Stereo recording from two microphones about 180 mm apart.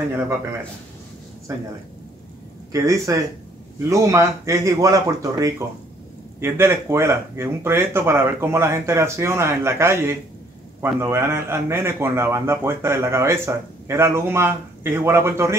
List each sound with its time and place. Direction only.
1.5 s a man's voice: 15° right (ahead or behind)
2.7 s a man's voice: 20° right (ahead or behind)